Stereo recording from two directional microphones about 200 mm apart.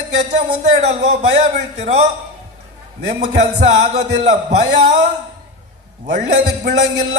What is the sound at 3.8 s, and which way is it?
Speech, 35° right (ahead or behind).